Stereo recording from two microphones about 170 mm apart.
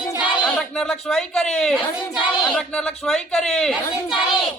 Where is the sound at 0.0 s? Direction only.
25° left (ahead or behind).